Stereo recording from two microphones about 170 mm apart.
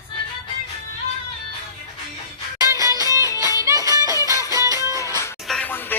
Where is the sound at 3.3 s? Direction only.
20° left (ahead or behind).